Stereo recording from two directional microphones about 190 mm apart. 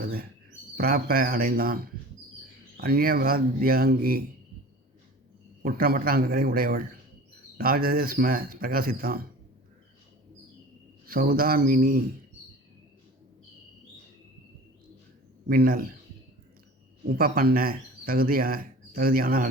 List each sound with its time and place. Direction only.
0.0 s bird: 55° right (ahead or behind)
0.8 s speech: 50° right (ahead or behind)
5.6 s speech: 50° right (ahead or behind)
11.1 s speech: 50° right (ahead or behind)
15.4 s speech: 50° right (ahead or behind)
17.2 s speech: 50° right (ahead or behind)